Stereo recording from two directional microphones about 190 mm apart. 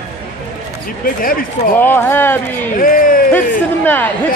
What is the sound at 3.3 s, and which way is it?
Speech, 10° left (ahead or behind).